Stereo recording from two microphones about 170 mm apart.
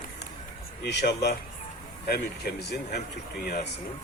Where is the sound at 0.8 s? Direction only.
75° left (ahead or behind).